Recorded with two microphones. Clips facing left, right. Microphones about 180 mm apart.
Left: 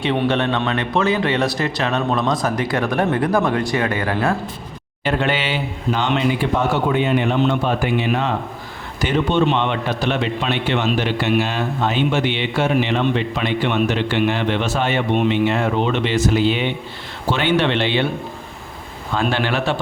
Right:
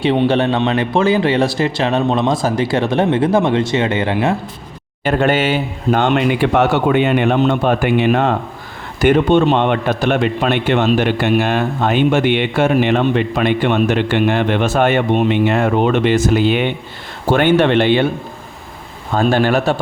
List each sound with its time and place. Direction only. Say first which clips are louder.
0.0 s a man's voice: right 5 dB; 30° right (ahead or behind)
5.0 s a man's voice: right 6 dB; 45° right (ahead or behind)
19.1 s a man's voice: right 6 dB; 45° right (ahead or behind)